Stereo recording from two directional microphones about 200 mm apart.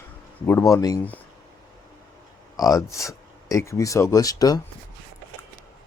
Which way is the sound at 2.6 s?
15° left (ahead or behind).